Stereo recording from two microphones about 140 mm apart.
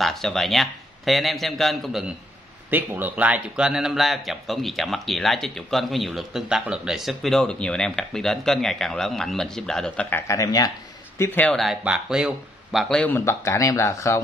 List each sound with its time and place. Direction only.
0.0 s speech: centre (ahead or behind)
2.7 s speech: 15° right (ahead or behind); by 10.7 s 25° left (ahead or behind)
11.1 s speech: 15° left (ahead or behind)
11.5 s speech: centre (ahead or behind)
13.1 s speech: 20° left (ahead or behind)